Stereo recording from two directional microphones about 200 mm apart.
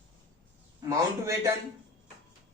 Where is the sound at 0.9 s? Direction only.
15° right (ahead or behind).